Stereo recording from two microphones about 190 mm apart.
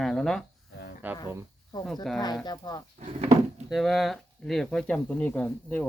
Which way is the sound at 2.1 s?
Centre (ahead or behind).